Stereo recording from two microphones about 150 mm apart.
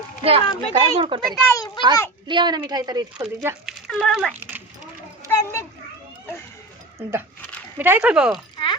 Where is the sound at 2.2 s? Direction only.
30° right (ahead or behind).